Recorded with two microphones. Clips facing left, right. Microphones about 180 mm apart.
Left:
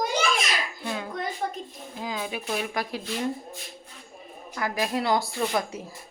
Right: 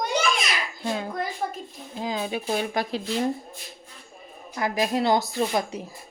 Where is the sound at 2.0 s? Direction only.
30° right (ahead or behind).